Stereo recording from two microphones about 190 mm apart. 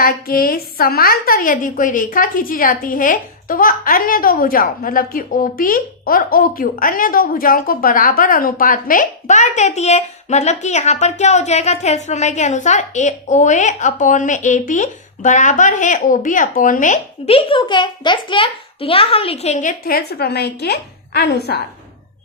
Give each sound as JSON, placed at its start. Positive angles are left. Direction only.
{"t": 0.0, "sound": "a woman's voice", "side_deg": 50}